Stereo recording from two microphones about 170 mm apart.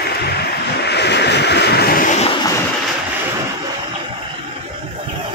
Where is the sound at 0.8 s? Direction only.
80° left.